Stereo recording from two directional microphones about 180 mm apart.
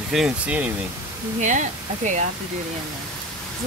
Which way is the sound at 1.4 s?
45° right (ahead or behind).